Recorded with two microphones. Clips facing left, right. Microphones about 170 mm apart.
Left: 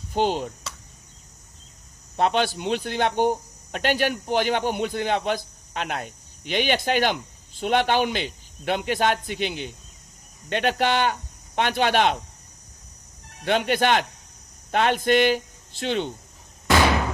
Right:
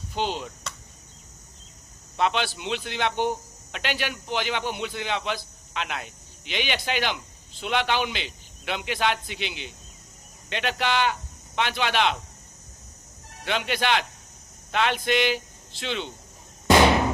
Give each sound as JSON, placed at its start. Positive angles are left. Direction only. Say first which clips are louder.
{"t": 0.1, "sound": "chop", "louder": "left 6 dB", "side_deg": 50}
{"t": 2.1, "sound": "a man's voice", "louder": "left 3 dB", "side_deg": 45}
{"t": 13.4, "sound": "speech", "louder": "left 5 dB", "side_deg": 50}
{"t": 16.6, "sound": "a sound", "louder": "right 2 dB", "side_deg": -20}